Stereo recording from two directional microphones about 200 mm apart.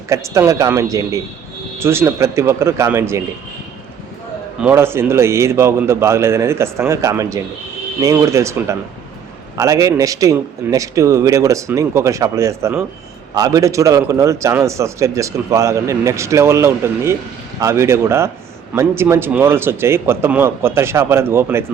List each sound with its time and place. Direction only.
0.1 s a man's voice: 15° right (ahead or behind)
4.6 s a man's voice: 10° right (ahead or behind)